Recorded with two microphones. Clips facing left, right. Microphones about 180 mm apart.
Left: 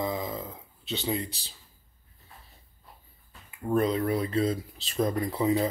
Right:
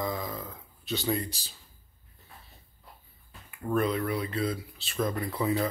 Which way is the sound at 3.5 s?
30° left (ahead or behind).